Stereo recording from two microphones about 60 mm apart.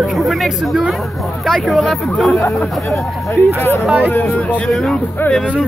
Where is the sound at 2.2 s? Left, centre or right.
Left.